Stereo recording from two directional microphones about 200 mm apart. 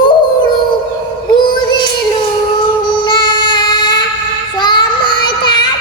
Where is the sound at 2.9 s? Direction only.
20° left (ahead or behind).